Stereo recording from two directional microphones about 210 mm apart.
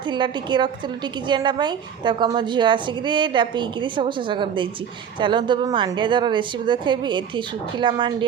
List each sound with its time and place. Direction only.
0.1 s a woman's voice: 20° right (ahead or behind)